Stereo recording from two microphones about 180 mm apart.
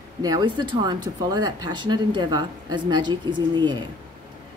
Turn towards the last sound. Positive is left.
turn(degrees=-25)  # may be behind; listen again after turning